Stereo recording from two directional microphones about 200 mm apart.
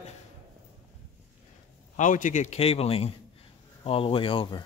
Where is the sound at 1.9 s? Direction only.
40° left (ahead or behind).